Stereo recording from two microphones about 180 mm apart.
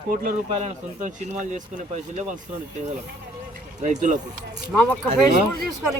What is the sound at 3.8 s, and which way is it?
Speech, 40° right (ahead or behind).